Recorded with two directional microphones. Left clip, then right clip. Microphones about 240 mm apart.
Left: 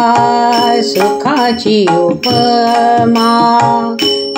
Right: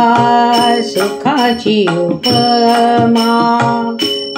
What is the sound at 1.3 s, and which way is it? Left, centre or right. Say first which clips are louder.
Music: left 1 dB; left.